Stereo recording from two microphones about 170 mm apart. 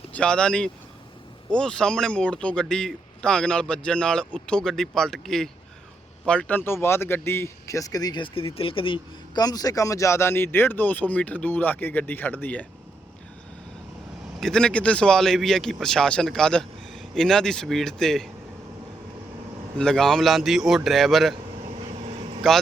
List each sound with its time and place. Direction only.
0.1 s a man's voice: 5° left (ahead or behind)
14.4 s a man's voice: 5° left (ahead or behind)
19.8 s a man's voice: 5° left (ahead or behind)
22.4 s a man's voice: 5° left (ahead or behind)